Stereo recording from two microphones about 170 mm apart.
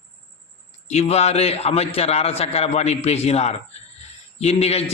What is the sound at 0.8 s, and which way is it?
A man's voice, 40° left (ahead or behind).